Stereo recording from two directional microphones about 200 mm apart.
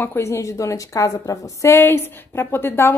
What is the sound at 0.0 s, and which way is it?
A woman's voice, 10° left (ahead or behind).